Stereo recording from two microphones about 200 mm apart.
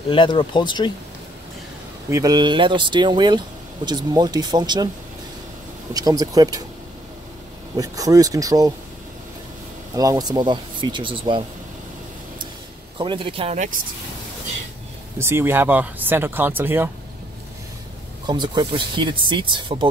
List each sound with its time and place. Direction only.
0.1 s speech: 25° left (ahead or behind)
2.0 s speech: 15° right (ahead or behind)
5.9 s speech: 20° right (ahead or behind)
7.7 s speech: 15° right (ahead or behind)
9.9 s speech: 20° right (ahead or behind)
12.9 s speech: 25° right (ahead or behind)
15.1 s speech: 10° right (ahead or behind)
18.2 s speech: 20° right (ahead or behind)